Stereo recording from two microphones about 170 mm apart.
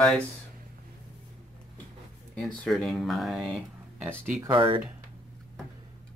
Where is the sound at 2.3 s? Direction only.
5° left (ahead or behind).